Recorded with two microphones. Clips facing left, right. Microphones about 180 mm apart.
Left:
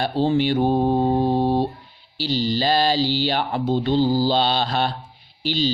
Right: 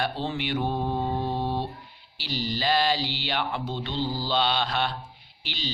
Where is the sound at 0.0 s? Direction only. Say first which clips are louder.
Left 10 dB; 35° left (ahead or behind).